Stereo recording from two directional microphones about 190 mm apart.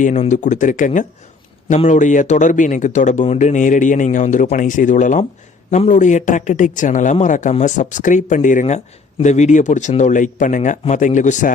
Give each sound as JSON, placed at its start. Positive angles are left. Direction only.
{"t": 0.0, "sound": "speech", "side_deg": 40}